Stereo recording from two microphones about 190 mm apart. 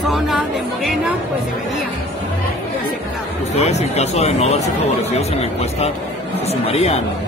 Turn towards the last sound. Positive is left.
turn(degrees=35)  # may be behind; listen again after turning